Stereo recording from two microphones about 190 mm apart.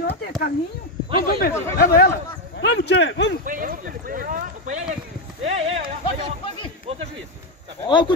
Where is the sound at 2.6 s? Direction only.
60° left (ahead or behind).